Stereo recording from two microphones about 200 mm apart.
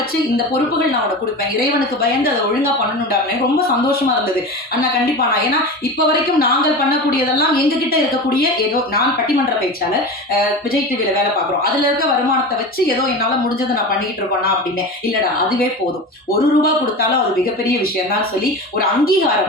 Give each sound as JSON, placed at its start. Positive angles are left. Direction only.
{"t": 1.5, "sound": "a woman's voice", "side_deg": 45}
{"t": 16.4, "sound": "a woman's voice", "side_deg": 45}